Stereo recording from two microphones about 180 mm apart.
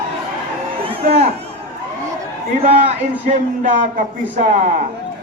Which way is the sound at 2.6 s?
35° right (ahead or behind).